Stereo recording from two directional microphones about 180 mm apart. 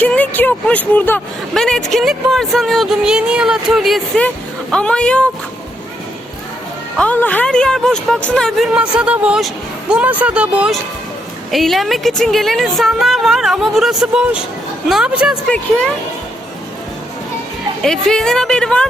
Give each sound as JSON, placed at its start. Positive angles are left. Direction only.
{"t": 0.0, "sound": "speech", "side_deg": 10}
{"t": 6.9, "sound": "speech", "side_deg": 5}
{"t": 15.4, "sound": "speech", "side_deg": 5}
{"t": 17.8, "sound": "speech", "side_deg": 5}